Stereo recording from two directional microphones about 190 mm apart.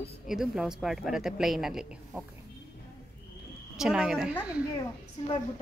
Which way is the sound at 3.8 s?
5° right (ahead or behind).